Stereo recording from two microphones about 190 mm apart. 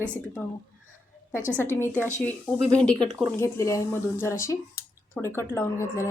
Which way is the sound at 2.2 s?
5° left (ahead or behind).